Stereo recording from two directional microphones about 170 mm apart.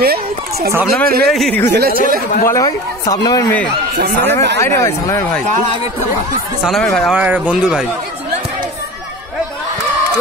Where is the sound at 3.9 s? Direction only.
65° right (ahead or behind).